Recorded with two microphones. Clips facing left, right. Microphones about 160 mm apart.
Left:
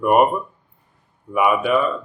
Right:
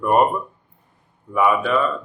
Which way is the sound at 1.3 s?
10° left (ahead or behind).